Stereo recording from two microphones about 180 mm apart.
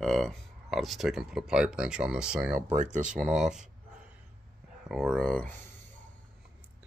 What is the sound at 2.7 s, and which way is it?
Speech, 40° right (ahead or behind).